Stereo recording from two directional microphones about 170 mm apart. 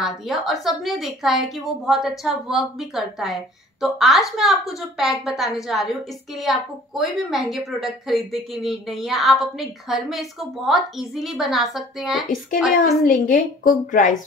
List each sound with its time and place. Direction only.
0.0 s a woman's voice: centre (ahead or behind)
12.8 s a woman's voice: 50° left (ahead or behind)